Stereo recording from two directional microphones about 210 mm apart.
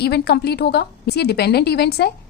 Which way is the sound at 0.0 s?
50° left (ahead or behind).